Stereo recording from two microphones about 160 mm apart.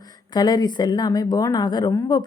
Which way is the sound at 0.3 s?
25° left (ahead or behind).